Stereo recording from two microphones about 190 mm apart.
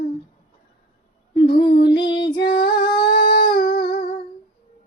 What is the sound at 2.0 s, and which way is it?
Female singing, 65° left (ahead or behind).